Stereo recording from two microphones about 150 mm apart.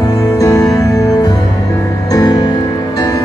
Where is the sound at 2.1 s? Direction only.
30° left (ahead or behind).